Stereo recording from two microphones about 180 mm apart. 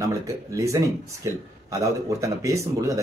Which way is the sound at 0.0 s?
20° right (ahead or behind).